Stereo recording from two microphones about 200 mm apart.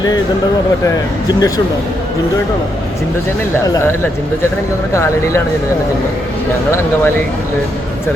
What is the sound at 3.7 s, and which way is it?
Speech, 15° left (ahead or behind).